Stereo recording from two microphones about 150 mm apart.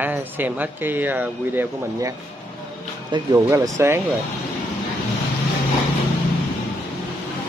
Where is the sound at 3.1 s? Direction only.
25° right (ahead or behind).